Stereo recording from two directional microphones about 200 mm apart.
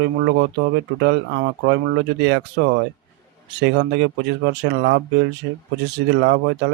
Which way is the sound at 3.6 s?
60° right (ahead or behind).